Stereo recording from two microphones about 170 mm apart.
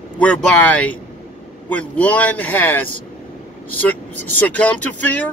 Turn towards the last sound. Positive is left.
turn(degrees=10)  # may be behind; listen again after turning